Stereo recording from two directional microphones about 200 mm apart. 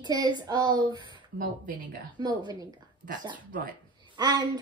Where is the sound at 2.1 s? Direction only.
20° right (ahead or behind).